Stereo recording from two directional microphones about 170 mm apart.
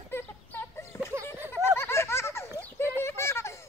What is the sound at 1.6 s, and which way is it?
Baby laughter, 15° left (ahead or behind).